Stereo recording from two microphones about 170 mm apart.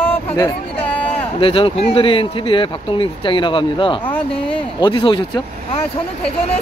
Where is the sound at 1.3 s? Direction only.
30° left (ahead or behind).